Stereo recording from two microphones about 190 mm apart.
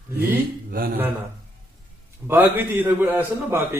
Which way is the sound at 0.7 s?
50° right (ahead or behind).